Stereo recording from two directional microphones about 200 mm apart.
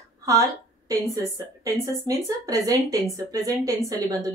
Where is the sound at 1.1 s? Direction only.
15° right (ahead or behind).